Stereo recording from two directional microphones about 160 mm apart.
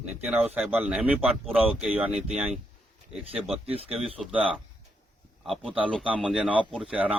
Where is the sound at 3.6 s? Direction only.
35° right (ahead or behind).